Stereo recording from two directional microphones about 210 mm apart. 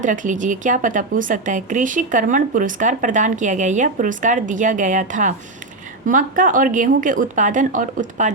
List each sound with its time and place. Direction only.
0.0 s speech: 35° right (ahead or behind)